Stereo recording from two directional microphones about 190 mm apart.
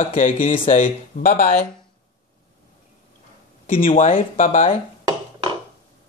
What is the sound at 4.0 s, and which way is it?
Speech, 45° left (ahead or behind).